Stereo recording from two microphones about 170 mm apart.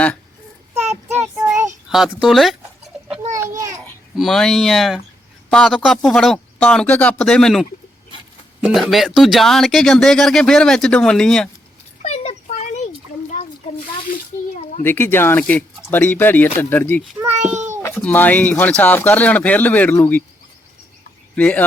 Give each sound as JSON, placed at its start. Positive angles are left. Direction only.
{"t": 0.8, "sound": "child singing", "side_deg": -40}
{"t": 1.2, "sound": "child singing", "side_deg": -15}
{"t": 1.9, "sound": "speech", "side_deg": -5}
{"t": 3.3, "sound": "a sound", "side_deg": -15}
{"t": 4.1, "sound": "speech", "side_deg": 0}
{"t": 12.0, "sound": "a sound", "side_deg": 40}
{"t": 14.1, "sound": "a sound", "side_deg": 45}
{"t": 14.8, "sound": "speech", "side_deg": 15}
{"t": 21.3, "sound": "speech", "side_deg": 10}